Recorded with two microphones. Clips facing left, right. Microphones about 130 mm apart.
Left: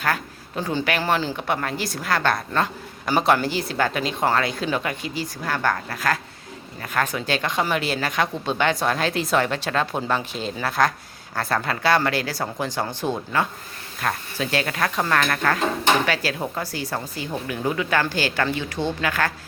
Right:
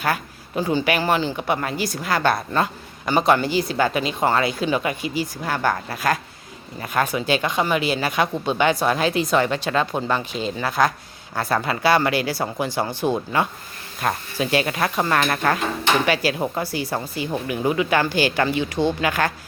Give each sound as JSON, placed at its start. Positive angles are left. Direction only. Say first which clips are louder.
{"t": 0.0, "sound": "speech", "louder": "right 1 dB", "side_deg": -10}
{"t": 3.1, "sound": "speech", "louder": "right 2 dB", "side_deg": 0}